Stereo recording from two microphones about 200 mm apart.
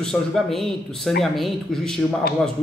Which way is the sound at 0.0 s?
Centre (ahead or behind).